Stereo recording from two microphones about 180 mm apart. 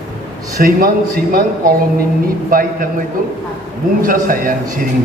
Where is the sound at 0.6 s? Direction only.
55° right (ahead or behind).